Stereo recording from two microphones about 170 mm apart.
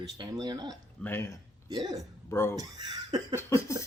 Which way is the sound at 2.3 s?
15° left (ahead or behind).